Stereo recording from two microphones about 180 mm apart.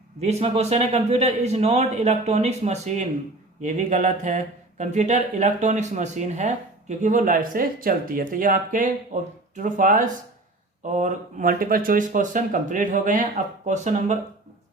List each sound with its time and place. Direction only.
0.2 s a man's voice: 35° right (ahead or behind)